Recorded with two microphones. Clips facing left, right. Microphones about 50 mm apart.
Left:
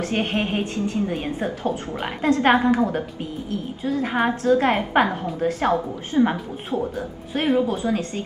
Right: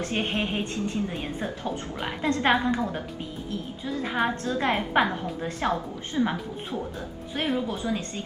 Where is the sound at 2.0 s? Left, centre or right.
Centre.